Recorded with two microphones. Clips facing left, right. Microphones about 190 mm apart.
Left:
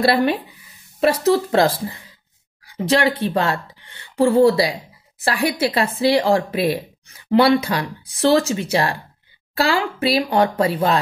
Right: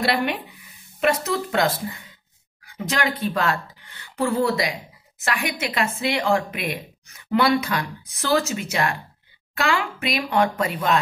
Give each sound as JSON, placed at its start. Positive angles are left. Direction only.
{"t": 0.0, "sound": "speech", "side_deg": 35}